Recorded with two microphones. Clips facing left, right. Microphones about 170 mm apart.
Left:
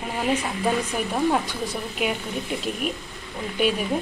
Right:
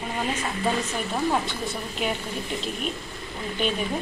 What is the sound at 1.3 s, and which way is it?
Speech, 5° left (ahead or behind).